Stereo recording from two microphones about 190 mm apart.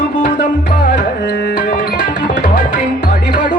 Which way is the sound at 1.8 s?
45° left (ahead or behind).